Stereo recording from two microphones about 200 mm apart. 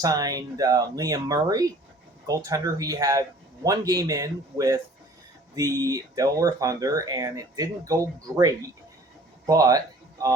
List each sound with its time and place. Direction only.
0.0 s speech: 20° right (ahead or behind)